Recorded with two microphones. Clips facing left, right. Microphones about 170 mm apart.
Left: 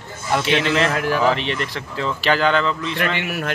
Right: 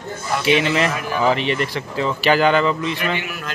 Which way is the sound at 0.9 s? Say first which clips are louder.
Left 4 dB; 85° left.